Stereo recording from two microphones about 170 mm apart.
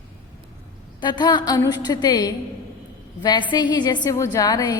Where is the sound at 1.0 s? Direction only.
25° left (ahead or behind).